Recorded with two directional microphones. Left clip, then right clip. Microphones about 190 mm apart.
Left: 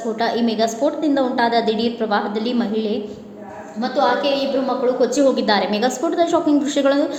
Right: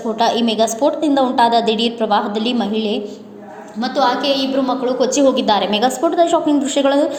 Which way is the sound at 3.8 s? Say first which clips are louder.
Right 2 dB; 45° right (ahead or behind).